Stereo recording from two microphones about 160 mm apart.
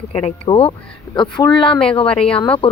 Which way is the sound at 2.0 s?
5° left (ahead or behind).